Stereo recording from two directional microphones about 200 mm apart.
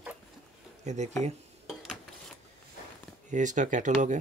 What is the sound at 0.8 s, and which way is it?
Speech, 35° right (ahead or behind).